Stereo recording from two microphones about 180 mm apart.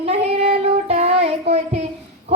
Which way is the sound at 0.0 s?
35° right (ahead or behind).